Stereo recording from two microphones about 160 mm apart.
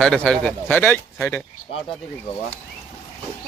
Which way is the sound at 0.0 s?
5° left (ahead or behind).